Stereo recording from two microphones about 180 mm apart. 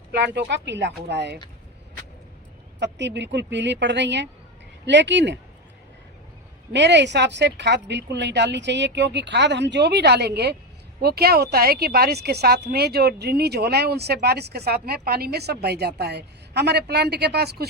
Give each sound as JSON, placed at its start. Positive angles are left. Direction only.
{"t": 0.1, "sound": "a woman's voice", "side_deg": -70}
{"t": 2.8, "sound": "a woman's voice", "side_deg": -75}
{"t": 6.7, "sound": "a woman's voice", "side_deg": -75}